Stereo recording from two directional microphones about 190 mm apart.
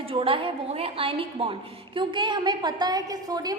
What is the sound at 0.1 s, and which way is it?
A woman's voice, 30° right (ahead or behind).